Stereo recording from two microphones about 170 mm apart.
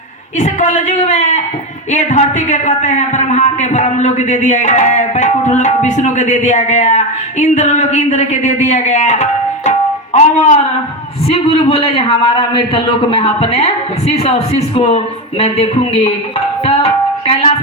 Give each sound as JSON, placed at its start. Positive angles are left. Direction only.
{"t": 0.3, "sound": "a man's voice", "side_deg": 45}
{"t": 16.6, "sound": "music", "side_deg": 35}